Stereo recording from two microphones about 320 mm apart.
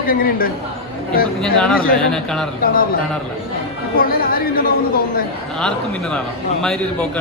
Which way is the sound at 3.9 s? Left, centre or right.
Left.